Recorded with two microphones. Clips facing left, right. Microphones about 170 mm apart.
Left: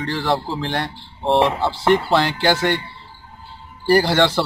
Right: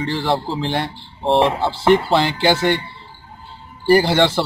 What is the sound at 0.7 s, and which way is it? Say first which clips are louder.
Speech: right 2 dB; 5° right (ahead or behind).